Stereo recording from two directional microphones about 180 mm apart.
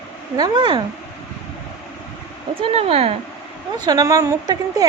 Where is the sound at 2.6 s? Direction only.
35° right (ahead or behind).